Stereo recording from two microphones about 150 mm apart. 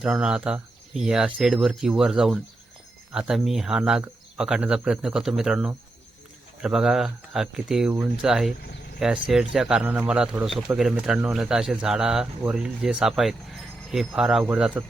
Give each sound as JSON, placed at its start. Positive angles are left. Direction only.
{"t": 0.0, "sound": "a man's voice", "side_deg": -5}